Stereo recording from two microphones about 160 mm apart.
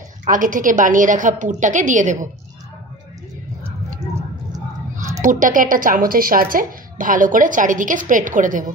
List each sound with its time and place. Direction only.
0.2 s a woman's voice: 55° right (ahead or behind)
5.2 s a woman's voice: 55° right (ahead or behind)